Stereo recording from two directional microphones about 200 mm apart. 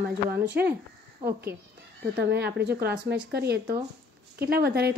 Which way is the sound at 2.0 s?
55° right (ahead or behind).